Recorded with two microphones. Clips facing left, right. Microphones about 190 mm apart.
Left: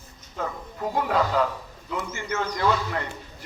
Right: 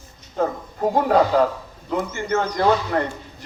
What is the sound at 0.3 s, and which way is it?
A man's voice, 45° right (ahead or behind).